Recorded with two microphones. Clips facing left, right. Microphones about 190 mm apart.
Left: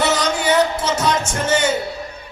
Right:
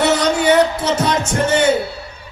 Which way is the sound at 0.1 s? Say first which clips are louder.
Right 4 dB; 60° right (ahead or behind).